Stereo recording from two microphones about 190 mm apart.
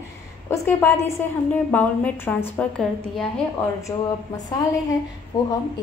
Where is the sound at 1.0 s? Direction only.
10° left (ahead or behind).